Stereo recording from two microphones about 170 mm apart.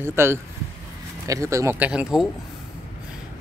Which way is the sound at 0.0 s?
15° right (ahead or behind).